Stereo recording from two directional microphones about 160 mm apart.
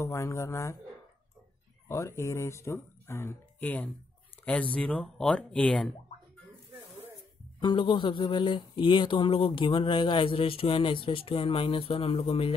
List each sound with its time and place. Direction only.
0.0 s speech: 15° left (ahead or behind)
1.9 s speech: 15° left (ahead or behind)
7.6 s speech: 30° left (ahead or behind)